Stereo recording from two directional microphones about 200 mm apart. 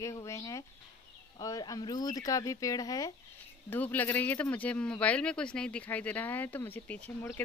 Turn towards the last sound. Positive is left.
turn(degrees=10)  # may be behind; listen again after turning